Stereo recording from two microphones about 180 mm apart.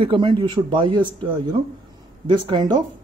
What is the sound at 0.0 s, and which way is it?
Speech, 30° right (ahead or behind).